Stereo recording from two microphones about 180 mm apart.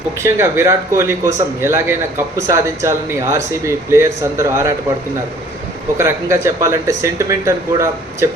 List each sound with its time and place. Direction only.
0.2 s speech: 15° right (ahead or behind)
6.0 s speech: 15° right (ahead or behind)